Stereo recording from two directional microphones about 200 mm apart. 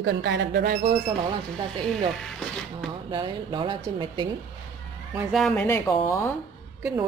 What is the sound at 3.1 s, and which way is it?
Speech, 25° right (ahead or behind).